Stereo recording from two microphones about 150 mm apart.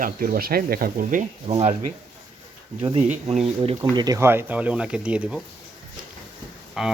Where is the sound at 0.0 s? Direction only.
75° right (ahead or behind).